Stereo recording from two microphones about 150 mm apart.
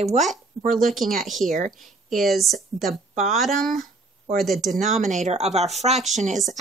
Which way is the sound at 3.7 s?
65° right (ahead or behind).